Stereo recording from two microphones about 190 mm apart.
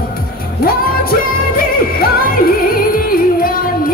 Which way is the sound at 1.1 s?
50° left (ahead or behind).